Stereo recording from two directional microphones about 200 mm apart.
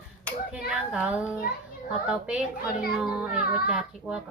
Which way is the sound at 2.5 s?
50° left (ahead or behind).